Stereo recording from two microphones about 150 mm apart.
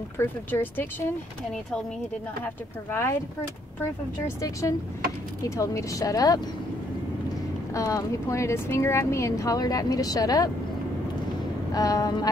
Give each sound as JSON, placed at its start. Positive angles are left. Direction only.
{"t": 0.2, "sound": "speech", "side_deg": 15}
{"t": 2.9, "sound": "speech", "side_deg": 15}
{"t": 4.4, "sound": "speech", "side_deg": 20}
{"t": 7.7, "sound": "speech", "side_deg": 20}
{"t": 11.7, "sound": "speech", "side_deg": 25}